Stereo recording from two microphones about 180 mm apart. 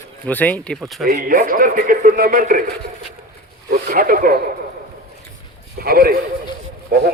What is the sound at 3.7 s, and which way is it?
Speech, 55° right (ahead or behind).